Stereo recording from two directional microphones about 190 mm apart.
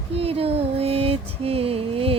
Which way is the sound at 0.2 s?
30° right (ahead or behind).